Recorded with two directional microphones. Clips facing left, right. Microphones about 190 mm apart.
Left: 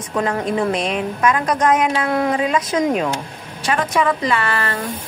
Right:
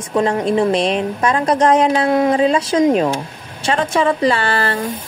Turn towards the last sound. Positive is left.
turn(degrees=-30)  # may be behind; listen again after turning